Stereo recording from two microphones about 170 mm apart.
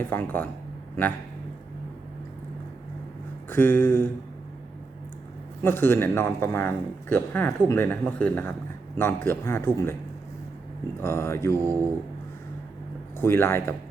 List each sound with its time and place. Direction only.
0.1 s speech: 10° left (ahead or behind)
3.5 s speech: 10° left (ahead or behind)
5.6 s speech: 15° left (ahead or behind)
11.0 s speech: 15° left (ahead or behind)
11.5 s speech: 20° right (ahead or behind)
13.2 s speech: 15° left (ahead or behind)